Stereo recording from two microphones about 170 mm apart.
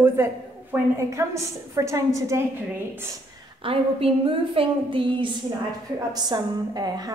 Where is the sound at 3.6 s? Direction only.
30° right (ahead or behind).